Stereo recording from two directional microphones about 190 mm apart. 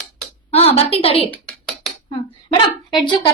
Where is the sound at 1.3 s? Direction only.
5° left (ahead or behind).